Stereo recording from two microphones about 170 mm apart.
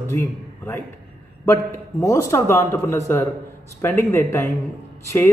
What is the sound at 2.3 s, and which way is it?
A man's voice, 15° left (ahead or behind).